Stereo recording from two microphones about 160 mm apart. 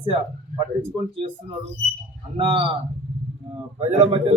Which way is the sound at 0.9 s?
30° right (ahead or behind).